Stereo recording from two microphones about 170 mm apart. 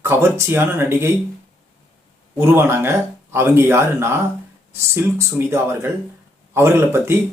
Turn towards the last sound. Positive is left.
turn(degrees=-15)  # may be behind; listen again after turning